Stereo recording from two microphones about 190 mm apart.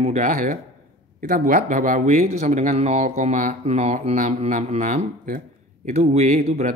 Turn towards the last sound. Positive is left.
turn(degrees=-35)  # may be behind; listen again after turning